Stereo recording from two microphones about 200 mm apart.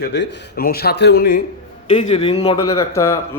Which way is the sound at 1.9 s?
30° left (ahead or behind).